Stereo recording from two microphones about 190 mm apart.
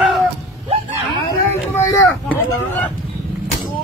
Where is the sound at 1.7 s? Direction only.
10° left (ahead or behind).